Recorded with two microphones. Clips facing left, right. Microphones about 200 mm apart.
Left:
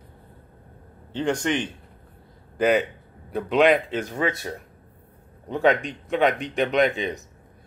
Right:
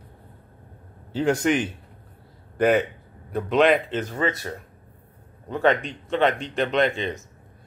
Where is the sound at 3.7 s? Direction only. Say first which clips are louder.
Even; centre (ahead or behind).